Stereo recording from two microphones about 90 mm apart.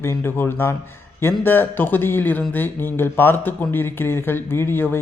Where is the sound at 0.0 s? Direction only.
25° left (ahead or behind).